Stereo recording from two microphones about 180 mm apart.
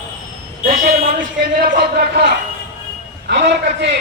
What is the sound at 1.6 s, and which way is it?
A man's voice, 55° right (ahead or behind).